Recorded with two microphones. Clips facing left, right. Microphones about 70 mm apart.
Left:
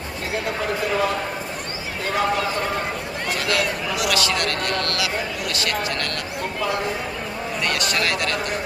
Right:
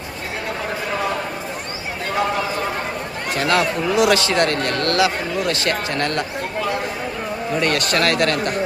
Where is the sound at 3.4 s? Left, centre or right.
Right.